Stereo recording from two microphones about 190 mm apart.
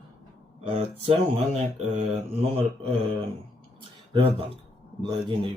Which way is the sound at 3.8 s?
25° right (ahead or behind).